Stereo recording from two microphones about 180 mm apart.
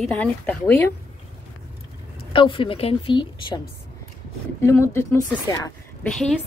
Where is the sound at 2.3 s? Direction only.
30° left (ahead or behind).